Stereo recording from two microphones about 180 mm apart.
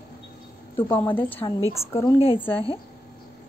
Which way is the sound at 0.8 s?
10° left (ahead or behind).